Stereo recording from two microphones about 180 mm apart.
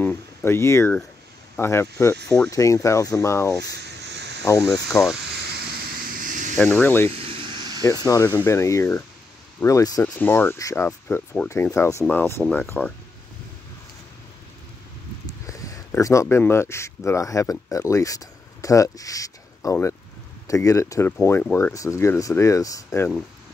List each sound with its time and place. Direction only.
0.0 s speech: 15° left (ahead or behind)
3.6 s a sound: 65° right (ahead or behind)
4.9 s speech: 15° left (ahead or behind)
6.1 s a sound: 45° right (ahead or behind)
6.5 s speech: 10° left (ahead or behind)
7.1 s vehicle: 30° right (ahead or behind)
7.8 s speech: 20° left (ahead or behind)
15.2 s speech: 20° left (ahead or behind)